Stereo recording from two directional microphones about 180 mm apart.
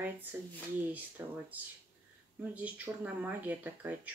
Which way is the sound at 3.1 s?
10° right (ahead or behind).